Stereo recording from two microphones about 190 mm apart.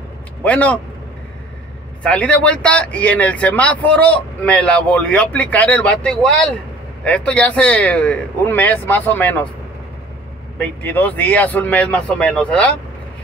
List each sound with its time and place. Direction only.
0.4 s speech: 5° left (ahead or behind)
2.0 s speech: 5° left (ahead or behind)
10.6 s speech: 10° left (ahead or behind)